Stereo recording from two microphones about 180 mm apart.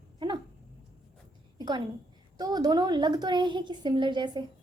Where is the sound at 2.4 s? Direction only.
20° right (ahead or behind).